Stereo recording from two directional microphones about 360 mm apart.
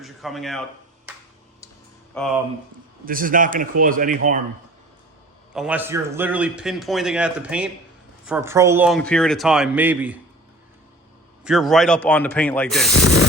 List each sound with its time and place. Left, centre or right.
0.0 s a man's voice: centre
2.1 s a man's voice: centre
3.1 s a man's voice: right
5.5 s a man's voice: centre
11.4 s a man's voice: centre
13.0 s a sound: left